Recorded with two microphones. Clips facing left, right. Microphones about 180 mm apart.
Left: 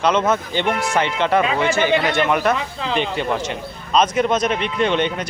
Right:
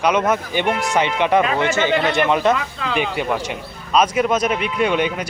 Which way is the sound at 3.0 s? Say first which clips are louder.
Right 1 dB; 10° right (ahead or behind).